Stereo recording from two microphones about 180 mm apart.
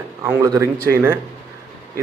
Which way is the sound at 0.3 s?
20° right (ahead or behind).